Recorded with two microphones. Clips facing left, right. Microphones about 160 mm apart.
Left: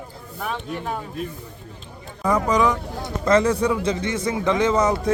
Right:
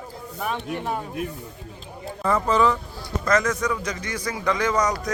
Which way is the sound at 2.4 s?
15° left (ahead or behind).